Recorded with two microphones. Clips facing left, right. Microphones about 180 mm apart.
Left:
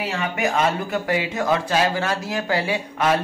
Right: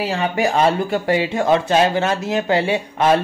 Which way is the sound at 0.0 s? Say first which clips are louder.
Right 5 dB; 35° right (ahead or behind).